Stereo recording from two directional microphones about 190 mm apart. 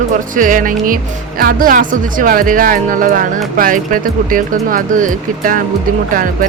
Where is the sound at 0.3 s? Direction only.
45° right (ahead or behind).